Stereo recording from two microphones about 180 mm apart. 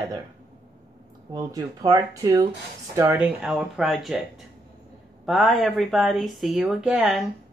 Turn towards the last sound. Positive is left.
turn(degrees=0)  # may be behind; listen again after turning